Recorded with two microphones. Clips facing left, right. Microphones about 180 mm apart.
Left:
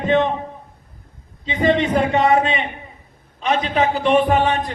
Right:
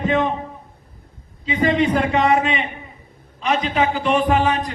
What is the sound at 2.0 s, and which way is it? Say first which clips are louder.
A man's voice: left 1 dB; 35° left (ahead or behind).